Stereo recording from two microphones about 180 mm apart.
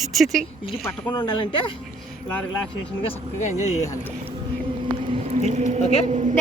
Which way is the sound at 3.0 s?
40° left (ahead or behind).